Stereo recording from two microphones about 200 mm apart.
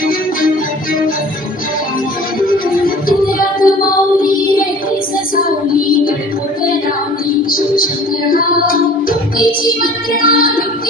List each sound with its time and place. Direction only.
2.4 s music: 45° left (ahead or behind)
7.5 s music: 45° left (ahead or behind)